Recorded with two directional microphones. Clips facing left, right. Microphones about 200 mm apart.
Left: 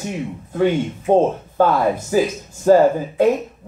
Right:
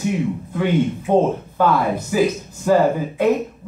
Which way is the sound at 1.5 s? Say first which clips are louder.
Left 3 dB; 40° left (ahead or behind).